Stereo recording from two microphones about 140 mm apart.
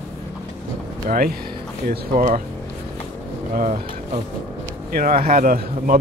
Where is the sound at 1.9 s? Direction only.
70° right (ahead or behind).